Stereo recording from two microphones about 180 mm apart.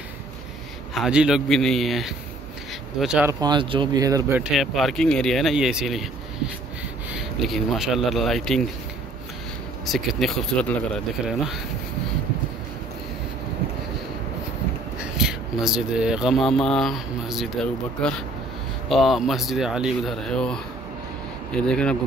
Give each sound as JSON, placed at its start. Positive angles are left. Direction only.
{"t": 0.9, "sound": "speech", "side_deg": -5}
{"t": 3.3, "sound": "speech", "side_deg": -20}
{"t": 4.4, "sound": "speech", "side_deg": 0}
{"t": 7.1, "sound": "speech", "side_deg": 0}
{"t": 9.8, "sound": "speech", "side_deg": 0}
{"t": 15.0, "sound": "speech", "side_deg": -5}